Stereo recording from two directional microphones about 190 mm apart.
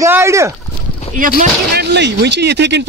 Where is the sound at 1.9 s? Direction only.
65° right (ahead or behind).